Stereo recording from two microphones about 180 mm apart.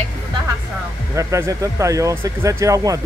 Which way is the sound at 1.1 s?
15° right (ahead or behind).